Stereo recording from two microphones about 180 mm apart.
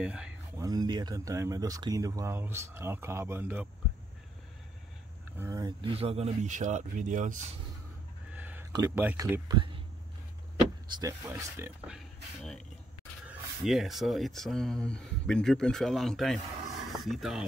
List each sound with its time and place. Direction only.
0.0 s speech: 5° right (ahead or behind)
0.6 s speech: 20° right (ahead or behind)
5.4 s speech: 20° right (ahead or behind); by 7.4 s 45° right (ahead or behind)
8.3 s a sound: 10° right (ahead or behind)
8.7 s speech: 15° right (ahead or behind)
11.0 s speech: 15° right (ahead or behind)
11.9 s speech: centre (ahead or behind)